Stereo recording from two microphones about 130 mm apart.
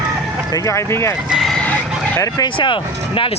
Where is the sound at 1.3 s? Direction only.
Centre (ahead or behind).